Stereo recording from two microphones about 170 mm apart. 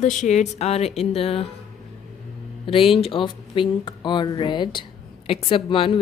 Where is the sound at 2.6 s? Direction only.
35° left (ahead or behind).